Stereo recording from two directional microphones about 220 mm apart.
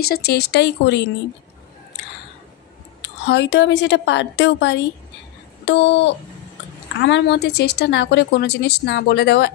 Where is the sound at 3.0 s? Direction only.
50° left (ahead or behind).